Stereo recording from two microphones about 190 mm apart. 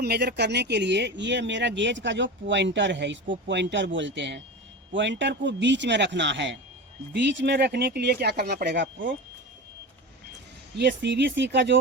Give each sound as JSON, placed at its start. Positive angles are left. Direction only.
{"t": 0.0, "sound": "speech", "side_deg": -55}
{"t": 10.8, "sound": "speech", "side_deg": -65}